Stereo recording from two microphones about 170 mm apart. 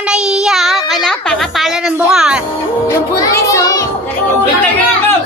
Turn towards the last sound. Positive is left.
turn(degrees=20)  # may be behind; listen again after turning